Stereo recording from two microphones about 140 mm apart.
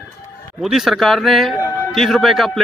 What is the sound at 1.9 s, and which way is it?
Speech, centre (ahead or behind).